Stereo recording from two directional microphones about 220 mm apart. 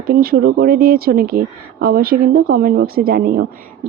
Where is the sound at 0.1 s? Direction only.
45° right (ahead or behind).